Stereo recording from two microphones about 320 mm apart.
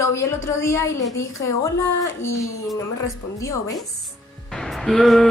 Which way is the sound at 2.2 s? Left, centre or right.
Left.